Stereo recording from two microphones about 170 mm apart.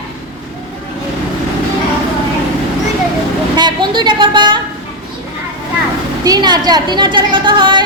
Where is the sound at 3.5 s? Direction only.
25° right (ahead or behind).